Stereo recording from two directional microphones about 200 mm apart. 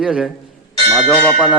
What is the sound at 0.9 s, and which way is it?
Bell, 5° right (ahead or behind).